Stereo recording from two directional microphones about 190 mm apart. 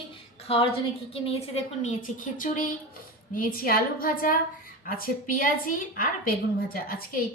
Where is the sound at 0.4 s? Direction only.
30° left (ahead or behind).